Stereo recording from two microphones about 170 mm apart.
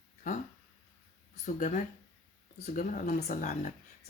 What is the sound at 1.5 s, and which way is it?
A woman's voice, 45° left (ahead or behind).